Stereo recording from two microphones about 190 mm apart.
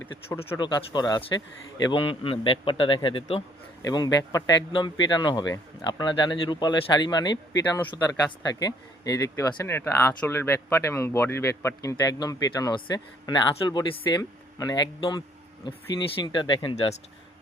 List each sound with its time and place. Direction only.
0.5 s a man's voice: 20° left (ahead or behind)